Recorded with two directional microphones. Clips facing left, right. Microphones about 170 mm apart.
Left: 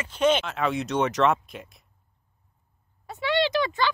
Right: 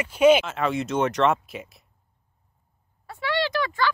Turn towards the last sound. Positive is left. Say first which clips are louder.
# left 1 dB
turn(degrees=20)  # may be behind; listen again after turning